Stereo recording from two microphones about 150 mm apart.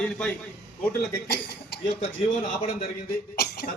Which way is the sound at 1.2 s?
90° left.